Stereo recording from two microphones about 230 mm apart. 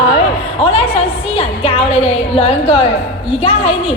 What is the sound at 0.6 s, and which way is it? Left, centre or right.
A woman's voice, left.